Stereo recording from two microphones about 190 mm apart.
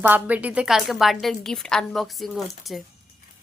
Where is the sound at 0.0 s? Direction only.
10° right (ahead or behind).